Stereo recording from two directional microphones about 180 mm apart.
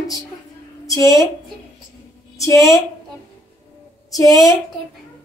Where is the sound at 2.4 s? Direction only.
15° left (ahead or behind).